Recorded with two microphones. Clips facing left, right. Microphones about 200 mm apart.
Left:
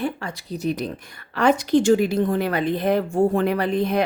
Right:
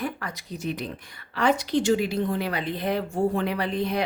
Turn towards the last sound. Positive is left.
turn(degrees=50)  # may be behind; listen again after turning